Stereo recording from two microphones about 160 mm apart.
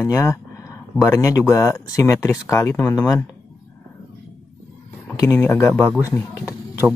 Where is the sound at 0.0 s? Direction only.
20° left (ahead or behind).